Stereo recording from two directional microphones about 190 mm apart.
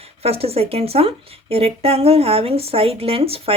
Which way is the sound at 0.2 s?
30° right (ahead or behind).